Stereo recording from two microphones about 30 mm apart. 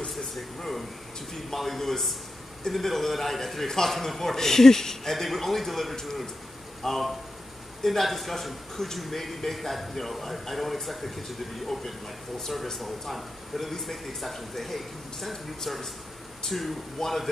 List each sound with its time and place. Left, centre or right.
1.3 s a man's voice: centre